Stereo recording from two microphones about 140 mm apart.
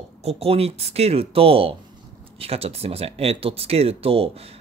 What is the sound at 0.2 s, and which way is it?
Speech, 45° right (ahead or behind).